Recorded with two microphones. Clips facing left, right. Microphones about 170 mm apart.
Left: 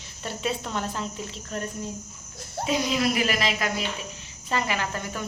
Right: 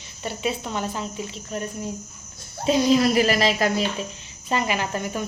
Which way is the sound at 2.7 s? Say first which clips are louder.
Right 7 dB; 30° right (ahead or behind).